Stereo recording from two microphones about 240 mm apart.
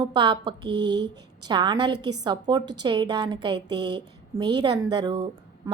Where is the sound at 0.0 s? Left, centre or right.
Centre.